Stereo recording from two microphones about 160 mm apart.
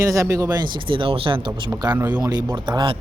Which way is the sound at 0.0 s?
20° right (ahead or behind).